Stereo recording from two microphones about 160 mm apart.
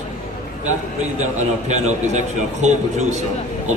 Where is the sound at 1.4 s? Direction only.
45° right (ahead or behind).